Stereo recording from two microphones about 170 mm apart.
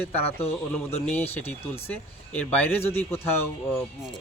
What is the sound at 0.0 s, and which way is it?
Speech, 10° left (ahead or behind).